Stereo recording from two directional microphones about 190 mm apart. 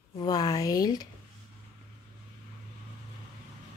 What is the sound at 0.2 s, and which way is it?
Speech, 20° left (ahead or behind).